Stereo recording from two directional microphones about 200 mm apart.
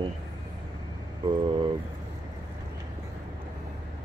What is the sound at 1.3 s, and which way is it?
Speech, 25° right (ahead or behind).